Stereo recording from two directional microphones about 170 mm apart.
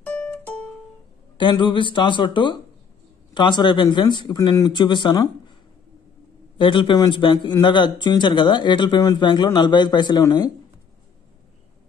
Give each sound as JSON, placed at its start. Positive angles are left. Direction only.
{"t": 0.0, "sound": "music", "side_deg": 10}
{"t": 1.4, "sound": "speech", "side_deg": 30}
{"t": 6.6, "sound": "speech", "side_deg": 30}